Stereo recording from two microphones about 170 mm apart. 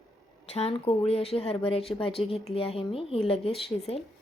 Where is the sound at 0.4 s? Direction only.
40° left (ahead or behind).